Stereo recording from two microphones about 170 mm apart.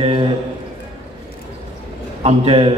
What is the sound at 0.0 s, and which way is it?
Speech, 30° right (ahead or behind).